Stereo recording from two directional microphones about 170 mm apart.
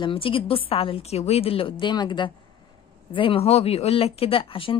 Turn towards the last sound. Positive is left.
turn(degrees=30)  # may be behind; listen again after turning